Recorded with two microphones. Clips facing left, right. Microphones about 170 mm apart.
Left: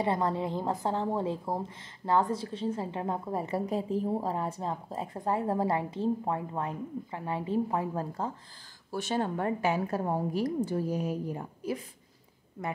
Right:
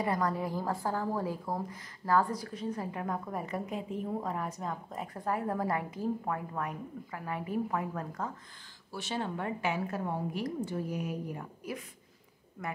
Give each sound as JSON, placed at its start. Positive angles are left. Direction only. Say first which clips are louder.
{"t": 0.0, "sound": "a woman's voice", "louder": "left 2 dB", "side_deg": 25}
{"t": 8.9, "sound": "a woman's voice", "louder": "left 5 dB", "side_deg": 45}